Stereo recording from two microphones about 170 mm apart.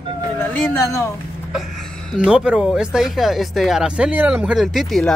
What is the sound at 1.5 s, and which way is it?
Speech, centre (ahead or behind).